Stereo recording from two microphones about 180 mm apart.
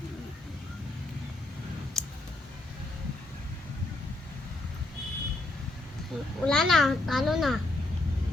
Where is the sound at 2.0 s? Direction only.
5° left (ahead or behind).